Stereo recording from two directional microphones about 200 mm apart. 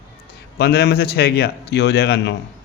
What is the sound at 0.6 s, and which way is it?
A man's voice, 55° left (ahead or behind).